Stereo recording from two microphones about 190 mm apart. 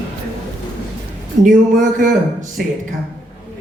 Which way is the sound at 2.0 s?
45° right (ahead or behind).